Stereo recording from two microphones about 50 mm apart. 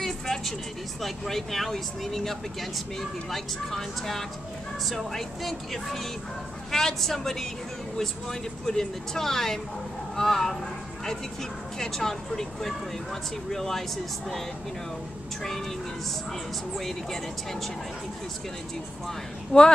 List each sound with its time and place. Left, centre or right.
0.0 s vehicle: centre
1.0 s speech: centre
11.8 s speech: centre
16.7 s speech: centre
19.5 s speech: left